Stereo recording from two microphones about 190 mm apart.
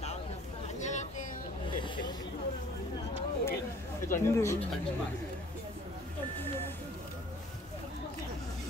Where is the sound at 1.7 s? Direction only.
25° left (ahead or behind).